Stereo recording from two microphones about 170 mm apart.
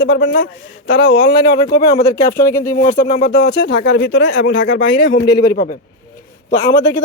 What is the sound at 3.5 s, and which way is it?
Speech, 90° left.